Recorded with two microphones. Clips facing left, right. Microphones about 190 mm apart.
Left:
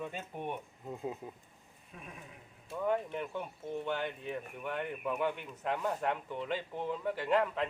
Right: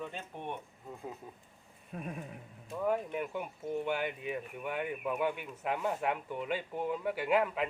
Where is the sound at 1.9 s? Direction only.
50° right (ahead or behind).